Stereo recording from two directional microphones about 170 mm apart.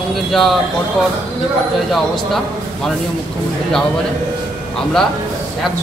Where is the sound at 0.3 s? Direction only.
Centre (ahead or behind).